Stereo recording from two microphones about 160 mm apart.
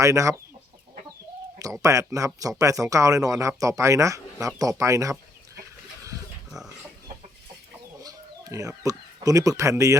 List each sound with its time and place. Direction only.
0.0 s speech: 20° right (ahead or behind)
1.8 s speech: 20° right (ahead or behind)
8.0 s speech: 20° right (ahead or behind)